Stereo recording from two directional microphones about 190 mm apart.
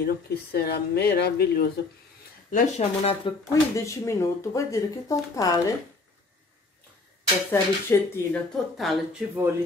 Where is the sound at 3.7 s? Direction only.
15° left (ahead or behind).